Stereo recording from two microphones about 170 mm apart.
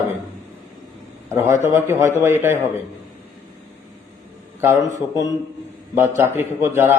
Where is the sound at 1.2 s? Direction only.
15° right (ahead or behind).